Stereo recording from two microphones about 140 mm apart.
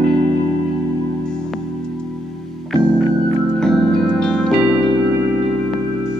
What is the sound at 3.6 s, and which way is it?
Music, 5° left (ahead or behind).